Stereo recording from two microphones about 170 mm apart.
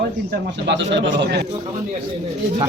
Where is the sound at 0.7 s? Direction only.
90° right.